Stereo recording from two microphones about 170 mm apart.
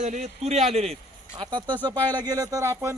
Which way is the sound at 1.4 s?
25° right (ahead or behind).